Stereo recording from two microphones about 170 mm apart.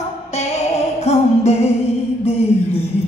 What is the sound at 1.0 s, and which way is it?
Music, 40° left (ahead or behind).